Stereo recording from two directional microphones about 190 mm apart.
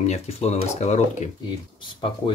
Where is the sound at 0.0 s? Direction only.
35° left (ahead or behind).